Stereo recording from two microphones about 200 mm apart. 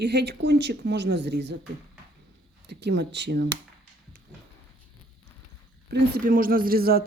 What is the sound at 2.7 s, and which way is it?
Speech, 60° right (ahead or behind).